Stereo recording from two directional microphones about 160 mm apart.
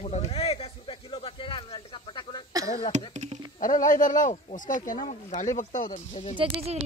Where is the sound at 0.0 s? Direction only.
40° left (ahead or behind).